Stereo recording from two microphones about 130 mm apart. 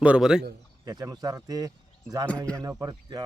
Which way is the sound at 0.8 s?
30° right (ahead or behind).